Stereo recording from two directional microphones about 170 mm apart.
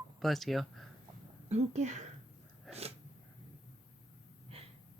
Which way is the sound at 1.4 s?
40° right (ahead or behind).